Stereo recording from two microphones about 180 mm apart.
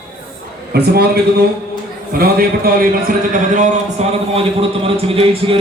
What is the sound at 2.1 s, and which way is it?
A man's voice, 55° right (ahead or behind).